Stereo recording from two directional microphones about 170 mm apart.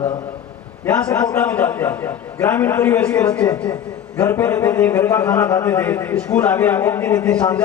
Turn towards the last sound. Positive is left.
turn(degrees=10)  # may be behind; listen again after turning